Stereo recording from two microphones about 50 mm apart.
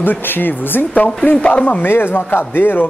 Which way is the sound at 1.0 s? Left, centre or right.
Left.